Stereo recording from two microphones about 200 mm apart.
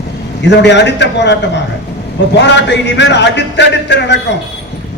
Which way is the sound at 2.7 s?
60° left (ahead or behind).